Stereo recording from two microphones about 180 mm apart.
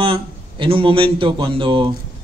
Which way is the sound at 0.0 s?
30° right (ahead or behind).